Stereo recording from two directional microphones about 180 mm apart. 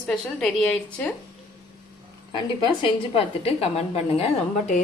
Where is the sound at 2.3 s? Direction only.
25° left (ahead or behind).